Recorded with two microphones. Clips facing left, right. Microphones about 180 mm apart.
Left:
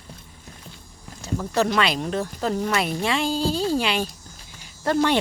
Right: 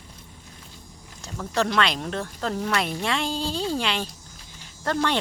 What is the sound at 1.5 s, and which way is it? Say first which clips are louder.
Speech: left 2 dB; 5° left (ahead or behind).